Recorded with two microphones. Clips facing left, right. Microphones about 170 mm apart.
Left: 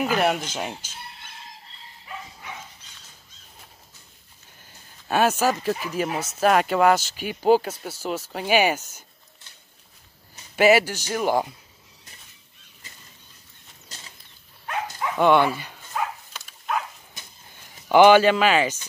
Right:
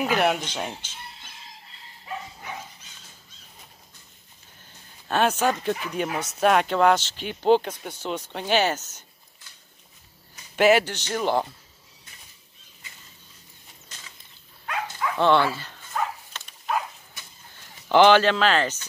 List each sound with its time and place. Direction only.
0.0 s speech: centre (ahead or behind)
5.0 s speech: 5° left (ahead or behind)
10.5 s speech: 5° left (ahead or behind)
13.8 s a sound: 35° left (ahead or behind)
14.7 s livestock: 20° left (ahead or behind)
15.1 s speech: 15° left (ahead or behind)
15.9 s dog: 5° left (ahead or behind)
17.8 s speech: 10° left (ahead or behind)